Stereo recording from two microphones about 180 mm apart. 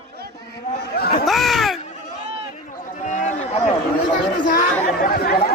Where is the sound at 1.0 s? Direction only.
55° left (ahead or behind).